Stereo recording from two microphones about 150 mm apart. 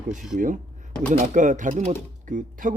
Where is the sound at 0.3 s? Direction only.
60° right (ahead or behind).